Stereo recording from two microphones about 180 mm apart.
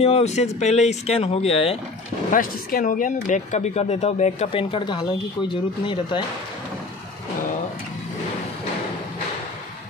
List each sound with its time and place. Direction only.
0.0 s speech: 35° left (ahead or behind)
2.3 s speech: 50° left (ahead or behind); by 6.2 s 25° left (ahead or behind)